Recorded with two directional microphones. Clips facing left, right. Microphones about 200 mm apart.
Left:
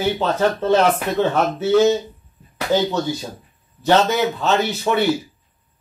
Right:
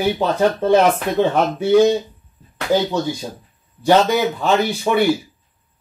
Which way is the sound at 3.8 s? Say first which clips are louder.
Right 2 dB; 10° right (ahead or behind).